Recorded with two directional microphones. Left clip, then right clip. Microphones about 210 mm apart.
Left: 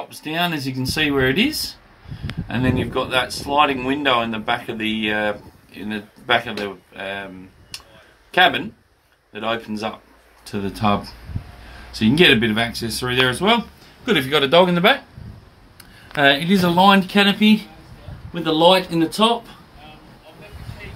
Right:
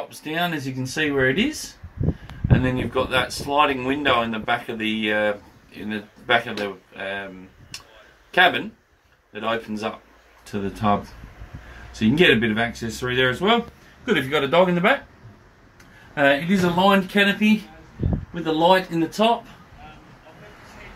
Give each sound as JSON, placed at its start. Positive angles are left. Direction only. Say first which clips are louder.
{"t": 0.2, "sound": "speech", "louder": "left 3 dB", "side_deg": 10}
{"t": 12.0, "sound": "speech", "louder": "left 3 dB", "side_deg": 10}
{"t": 16.2, "sound": "speech", "louder": "left 3 dB", "side_deg": 15}
{"t": 18.3, "sound": "speech", "louder": "left 3 dB", "side_deg": 5}